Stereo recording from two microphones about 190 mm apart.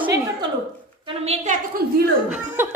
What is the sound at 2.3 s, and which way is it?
Speech, 10° right (ahead or behind).